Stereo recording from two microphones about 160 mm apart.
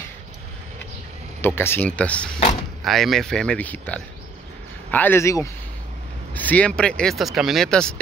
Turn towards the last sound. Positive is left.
turn(degrees=5)  # may be behind; listen again after turning